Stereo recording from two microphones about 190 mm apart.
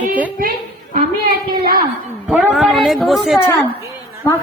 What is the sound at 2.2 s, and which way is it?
A man's voice, centre (ahead or behind).